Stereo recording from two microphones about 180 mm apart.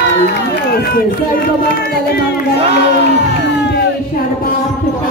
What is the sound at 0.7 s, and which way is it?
Speech, 60° left (ahead or behind).